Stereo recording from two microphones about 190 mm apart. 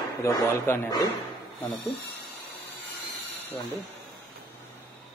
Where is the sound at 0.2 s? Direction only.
15° left (ahead or behind).